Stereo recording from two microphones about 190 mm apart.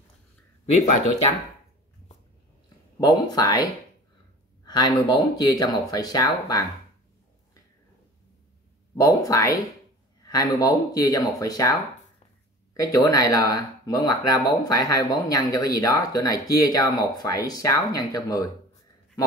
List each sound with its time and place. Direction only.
0.7 s speech: 40° left (ahead or behind)
3.0 s speech: 20° left (ahead or behind)
8.9 s speech: 15° left (ahead or behind)
12.7 s speech: 20° left (ahead or behind)